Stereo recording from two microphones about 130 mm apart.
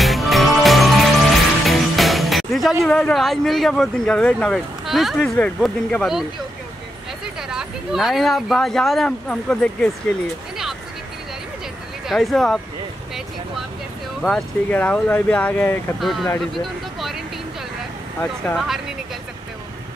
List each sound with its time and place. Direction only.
0.0 s music: centre (ahead or behind)
2.8 s speech: 5° left (ahead or behind)
7.4 s speech: 5° right (ahead or behind)
12.1 s speech: centre (ahead or behind)
14.2 s speech: 10° left (ahead or behind)
16.0 s speech: centre (ahead or behind)
18.5 s speech: centre (ahead or behind)